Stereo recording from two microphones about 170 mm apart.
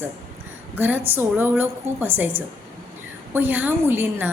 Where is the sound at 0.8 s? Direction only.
10° right (ahead or behind).